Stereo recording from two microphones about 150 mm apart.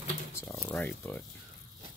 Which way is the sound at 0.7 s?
10° left (ahead or behind).